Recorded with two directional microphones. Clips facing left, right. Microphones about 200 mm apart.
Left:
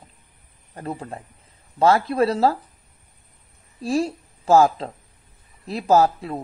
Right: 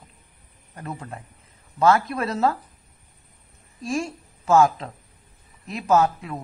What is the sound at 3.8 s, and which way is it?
A woman's voice, 35° left (ahead or behind).